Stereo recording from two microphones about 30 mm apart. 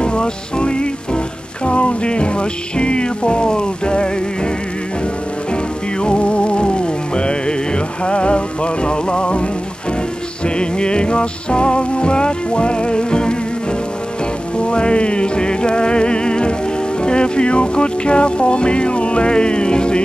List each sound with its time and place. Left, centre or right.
0.0 s music: left
5.9 s music: left
14.6 s music: left